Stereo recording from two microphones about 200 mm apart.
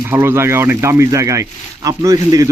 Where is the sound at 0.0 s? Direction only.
10° right (ahead or behind).